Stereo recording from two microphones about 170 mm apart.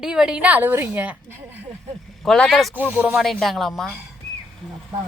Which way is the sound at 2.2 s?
Centre (ahead or behind).